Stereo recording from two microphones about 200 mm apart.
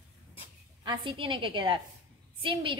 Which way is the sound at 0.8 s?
25° right (ahead or behind).